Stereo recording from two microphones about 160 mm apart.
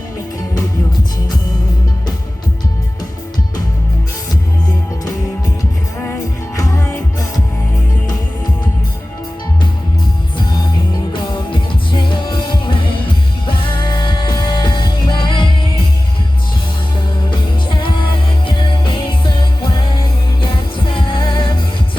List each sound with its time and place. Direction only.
6.6 s music: 20° left (ahead or behind)
10.4 s music: 25° left (ahead or behind)
17.7 s music: 30° left (ahead or behind)